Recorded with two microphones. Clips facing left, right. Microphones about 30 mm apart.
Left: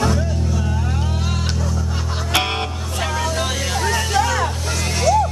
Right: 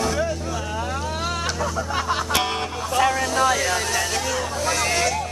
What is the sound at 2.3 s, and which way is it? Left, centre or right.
Music, left.